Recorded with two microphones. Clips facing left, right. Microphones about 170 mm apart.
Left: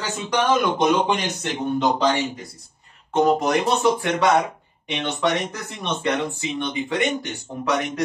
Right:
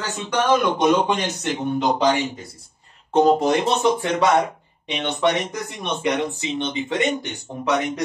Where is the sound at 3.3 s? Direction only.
25° right (ahead or behind).